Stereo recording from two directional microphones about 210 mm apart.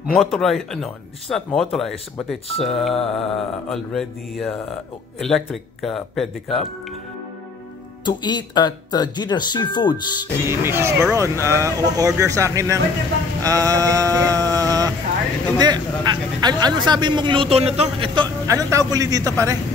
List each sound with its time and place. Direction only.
0.0 s speech: centre (ahead or behind)
8.0 s speech: 20° left (ahead or behind)
10.4 s speech: 10° right (ahead or behind)
13.4 s a sound: 15° right (ahead or behind)
15.5 s speech: 20° right (ahead or behind)